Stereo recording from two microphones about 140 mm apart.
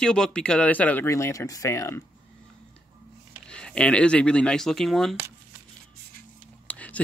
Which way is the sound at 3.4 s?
5° left (ahead or behind).